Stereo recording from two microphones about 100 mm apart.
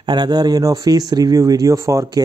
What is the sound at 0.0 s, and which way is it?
Speech, 50° right (ahead or behind).